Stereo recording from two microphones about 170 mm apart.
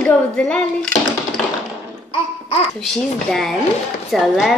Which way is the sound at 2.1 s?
35° left (ahead or behind).